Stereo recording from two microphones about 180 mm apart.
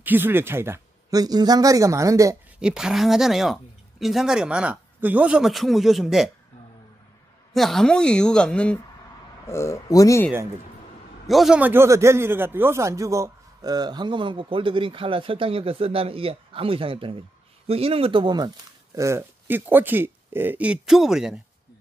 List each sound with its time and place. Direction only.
0.0 s speech: 10° right (ahead or behind)
2.6 s a man's voice: 5° right (ahead or behind)
7.5 s a man's voice: centre (ahead or behind)
11.2 s a man's voice: centre (ahead or behind)